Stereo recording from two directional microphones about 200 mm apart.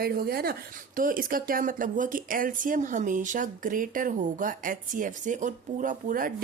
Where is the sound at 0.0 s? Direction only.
50° right (ahead or behind).